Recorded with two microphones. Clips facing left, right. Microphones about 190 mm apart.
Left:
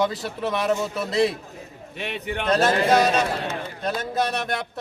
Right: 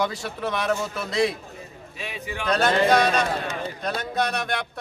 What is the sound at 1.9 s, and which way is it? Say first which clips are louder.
Speech: left 5 dB; 65° left (ahead or behind).